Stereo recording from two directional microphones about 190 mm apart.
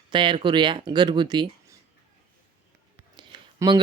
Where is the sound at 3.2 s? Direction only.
25° right (ahead or behind).